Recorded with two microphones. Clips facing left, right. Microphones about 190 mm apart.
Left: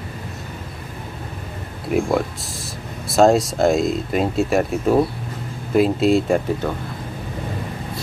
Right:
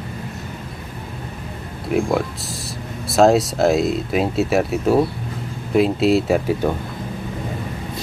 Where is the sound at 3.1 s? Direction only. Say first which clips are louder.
Even; centre (ahead or behind).